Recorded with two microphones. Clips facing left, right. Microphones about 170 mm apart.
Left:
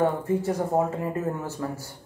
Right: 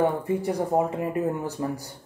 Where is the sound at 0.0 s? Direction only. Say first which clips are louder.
Even; 15° right (ahead or behind).